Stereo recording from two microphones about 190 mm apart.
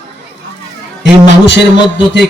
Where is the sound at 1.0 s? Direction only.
70° left (ahead or behind).